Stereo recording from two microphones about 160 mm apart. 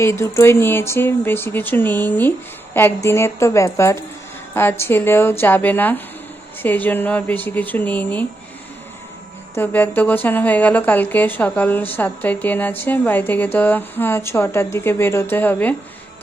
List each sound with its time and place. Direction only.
0.0 s a woman's voice: 15° left (ahead or behind)
9.6 s a woman's voice: 10° left (ahead or behind)